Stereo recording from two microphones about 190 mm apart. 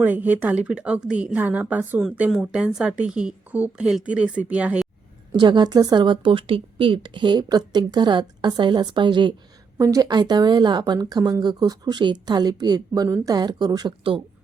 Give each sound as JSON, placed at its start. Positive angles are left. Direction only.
{"t": 0.0, "sound": "a woman's voice", "side_deg": -10}
{"t": 5.3, "sound": "speech", "side_deg": -25}